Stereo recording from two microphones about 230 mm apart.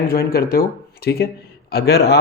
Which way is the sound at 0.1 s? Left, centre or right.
Left.